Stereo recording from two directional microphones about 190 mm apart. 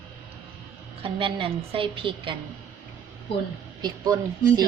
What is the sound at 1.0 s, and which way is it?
A woman's voice, 30° right (ahead or behind).